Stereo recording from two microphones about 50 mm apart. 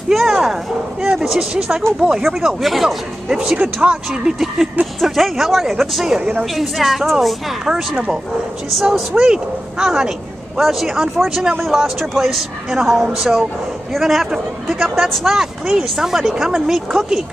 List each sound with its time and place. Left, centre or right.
0.1 s speech: centre
1.5 s speech: centre
2.2 s a woman's voice: centre
3.5 s speech: right
5.0 s a woman's voice: centre